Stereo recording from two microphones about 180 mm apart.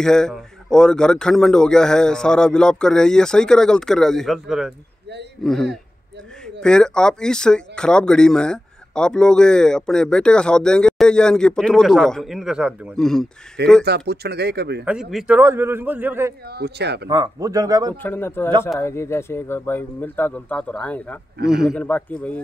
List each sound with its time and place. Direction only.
0.0 s speech: 5° left (ahead or behind)
13.8 s speech: 65° right (ahead or behind)
14.9 s a man's voice: centre (ahead or behind)
16.4 s speech: 65° right (ahead or behind)
17.1 s speech: 20° right (ahead or behind)
18.0 s speech: 10° left (ahead or behind)